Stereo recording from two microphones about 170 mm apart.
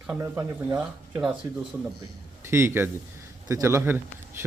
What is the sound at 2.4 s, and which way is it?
Speech, 15° right (ahead or behind).